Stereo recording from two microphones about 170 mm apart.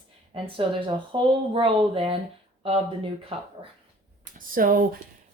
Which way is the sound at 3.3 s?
35° right (ahead or behind).